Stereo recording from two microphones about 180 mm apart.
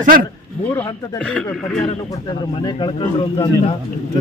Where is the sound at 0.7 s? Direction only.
5° left (ahead or behind).